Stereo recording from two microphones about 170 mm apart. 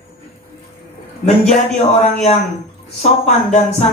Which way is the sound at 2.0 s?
40° left (ahead or behind).